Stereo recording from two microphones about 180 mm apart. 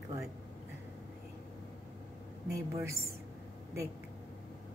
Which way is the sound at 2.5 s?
15° right (ahead or behind).